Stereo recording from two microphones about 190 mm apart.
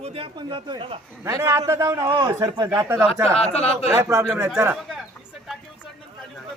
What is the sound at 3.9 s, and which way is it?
Speech, 15° right (ahead or behind).